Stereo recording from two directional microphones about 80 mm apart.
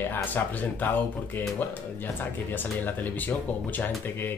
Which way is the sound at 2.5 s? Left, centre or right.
Left.